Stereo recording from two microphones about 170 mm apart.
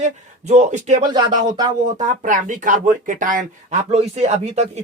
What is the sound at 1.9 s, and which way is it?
Speech, 50° right (ahead or behind).